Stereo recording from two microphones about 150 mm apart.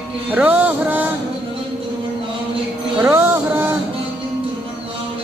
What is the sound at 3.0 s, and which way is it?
Music, 15° right (ahead or behind).